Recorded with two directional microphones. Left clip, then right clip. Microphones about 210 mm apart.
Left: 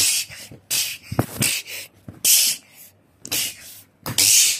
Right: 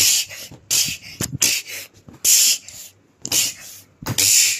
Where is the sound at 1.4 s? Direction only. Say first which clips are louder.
Right 8 dB; 10° right (ahead or behind).